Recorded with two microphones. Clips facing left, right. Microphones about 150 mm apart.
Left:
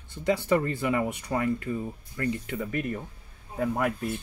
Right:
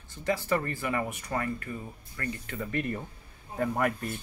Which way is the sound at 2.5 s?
5° left (ahead or behind).